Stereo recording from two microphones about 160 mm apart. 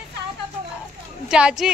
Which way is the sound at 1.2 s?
5° right (ahead or behind).